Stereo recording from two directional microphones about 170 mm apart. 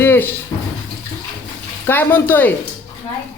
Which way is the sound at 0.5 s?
20° left (ahead or behind).